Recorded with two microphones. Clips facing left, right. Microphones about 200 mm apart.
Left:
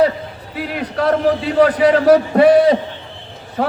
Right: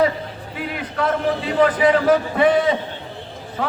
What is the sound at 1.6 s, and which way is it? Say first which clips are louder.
A man's voice: left 4 dB; 40° left (ahead or behind).